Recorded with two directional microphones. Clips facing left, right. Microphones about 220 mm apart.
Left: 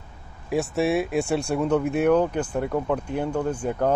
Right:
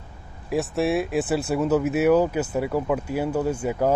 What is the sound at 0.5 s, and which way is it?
Speech, centre (ahead or behind).